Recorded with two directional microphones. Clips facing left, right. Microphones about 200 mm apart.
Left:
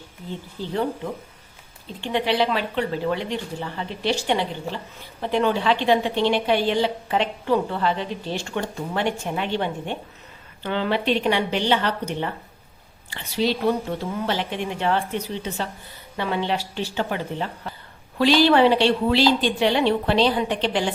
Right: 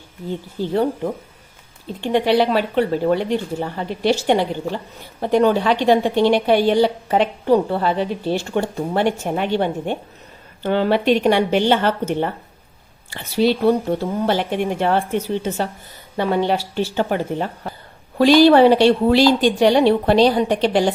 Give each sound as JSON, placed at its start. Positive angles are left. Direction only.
{"t": 0.7, "sound": "a woman's voice", "side_deg": -40}
{"t": 13.7, "sound": "a woman's voice", "side_deg": -35}
{"t": 14.3, "sound": "a woman's voice", "side_deg": -50}